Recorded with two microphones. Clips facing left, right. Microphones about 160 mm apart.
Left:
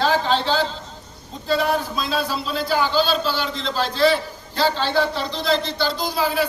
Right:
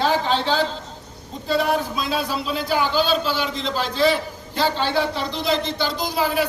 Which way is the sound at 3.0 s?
50° right (ahead or behind).